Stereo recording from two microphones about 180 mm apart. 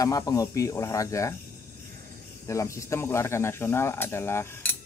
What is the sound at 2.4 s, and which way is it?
Cutlery, 15° left (ahead or behind).